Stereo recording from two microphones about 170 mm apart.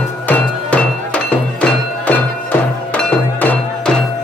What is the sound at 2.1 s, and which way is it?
Music, 10° left (ahead or behind).